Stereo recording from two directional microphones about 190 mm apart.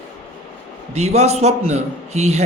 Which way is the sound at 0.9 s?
35° right (ahead or behind).